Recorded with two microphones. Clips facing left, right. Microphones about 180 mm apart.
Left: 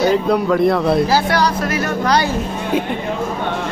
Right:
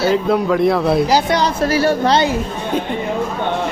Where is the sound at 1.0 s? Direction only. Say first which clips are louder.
Right 1 dB; 20° right (ahead or behind).